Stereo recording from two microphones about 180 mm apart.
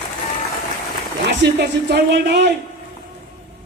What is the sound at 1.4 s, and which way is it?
Music, 70° right (ahead or behind).